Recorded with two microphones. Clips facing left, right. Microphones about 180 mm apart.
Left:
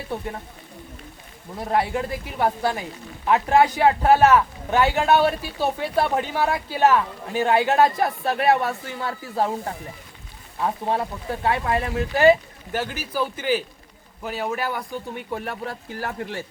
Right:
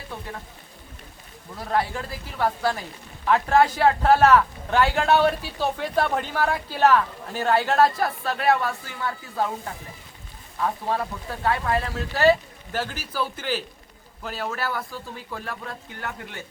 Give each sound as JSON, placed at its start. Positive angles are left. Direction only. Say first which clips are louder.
{"t": 1.5, "sound": "speech", "louder": "left 3 dB", "side_deg": 20}
{"t": 10.6, "sound": "speech", "louder": "left 2 dB", "side_deg": 25}